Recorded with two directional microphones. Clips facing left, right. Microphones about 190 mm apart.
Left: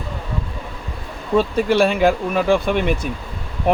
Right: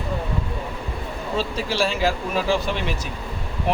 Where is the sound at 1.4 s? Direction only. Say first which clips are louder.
Left 8 dB; 55° left (ahead or behind).